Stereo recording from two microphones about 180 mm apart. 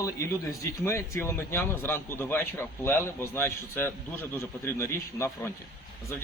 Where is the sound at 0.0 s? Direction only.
15° left (ahead or behind).